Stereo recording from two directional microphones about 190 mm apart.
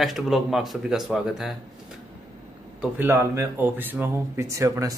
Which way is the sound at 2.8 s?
10° right (ahead or behind).